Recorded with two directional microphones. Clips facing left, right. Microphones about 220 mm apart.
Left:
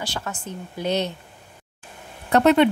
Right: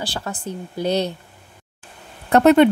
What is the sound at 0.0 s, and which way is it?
A woman's voice, 35° right (ahead or behind).